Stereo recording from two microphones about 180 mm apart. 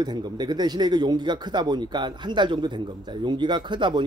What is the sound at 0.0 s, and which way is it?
Speech, 25° right (ahead or behind).